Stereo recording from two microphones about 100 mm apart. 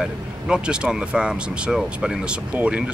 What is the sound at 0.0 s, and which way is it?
Speech, 10° right (ahead or behind).